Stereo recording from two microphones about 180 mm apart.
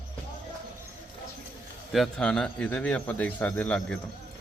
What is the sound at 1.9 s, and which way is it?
Speech, 5° left (ahead or behind).